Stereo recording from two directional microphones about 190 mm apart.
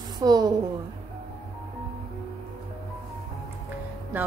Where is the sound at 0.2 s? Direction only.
20° right (ahead or behind).